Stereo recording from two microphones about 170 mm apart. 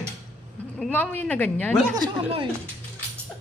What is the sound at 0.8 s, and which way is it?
Speech, 10° left (ahead or behind).